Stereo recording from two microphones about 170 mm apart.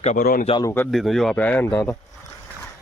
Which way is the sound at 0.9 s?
Centre (ahead or behind).